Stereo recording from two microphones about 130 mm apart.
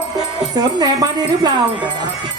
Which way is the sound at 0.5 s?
30° right (ahead or behind).